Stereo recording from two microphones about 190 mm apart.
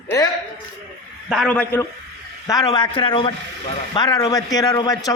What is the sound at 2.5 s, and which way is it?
A man's voice, 20° left (ahead or behind).